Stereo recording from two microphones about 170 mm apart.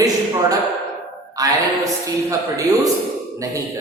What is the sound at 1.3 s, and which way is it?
A man's voice, 20° right (ahead or behind).